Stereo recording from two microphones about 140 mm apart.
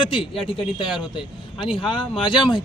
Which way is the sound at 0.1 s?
40° left (ahead or behind).